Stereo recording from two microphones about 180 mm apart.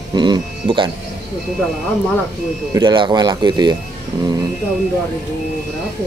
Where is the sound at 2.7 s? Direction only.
25° right (ahead or behind).